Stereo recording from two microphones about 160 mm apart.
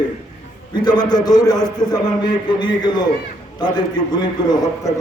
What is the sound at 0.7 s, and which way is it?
A man's voice, 25° left (ahead or behind).